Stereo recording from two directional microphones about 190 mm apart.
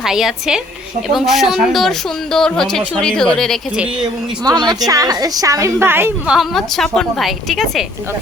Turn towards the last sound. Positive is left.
turn(degrees=0)  # may be behind; listen again after turning